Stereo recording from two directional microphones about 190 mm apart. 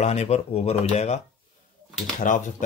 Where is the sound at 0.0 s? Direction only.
35° left (ahead or behind).